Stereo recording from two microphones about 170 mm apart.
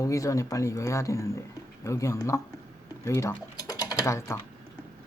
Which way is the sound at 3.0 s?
15° left (ahead or behind).